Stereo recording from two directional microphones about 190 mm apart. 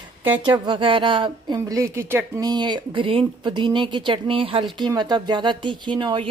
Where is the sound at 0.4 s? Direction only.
25° right (ahead or behind).